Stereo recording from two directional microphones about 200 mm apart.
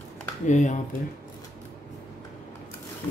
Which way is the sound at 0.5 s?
35° left (ahead or behind).